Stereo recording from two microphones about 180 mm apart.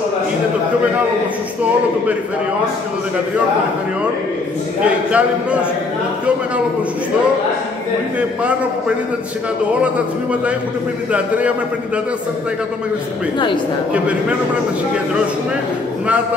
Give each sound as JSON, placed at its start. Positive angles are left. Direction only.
{"t": 4.8, "sound": "a man's voice", "side_deg": -5}
{"t": 9.8, "sound": "a man's voice", "side_deg": -5}